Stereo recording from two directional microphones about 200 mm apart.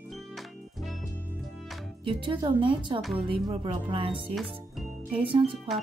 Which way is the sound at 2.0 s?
25° right (ahead or behind).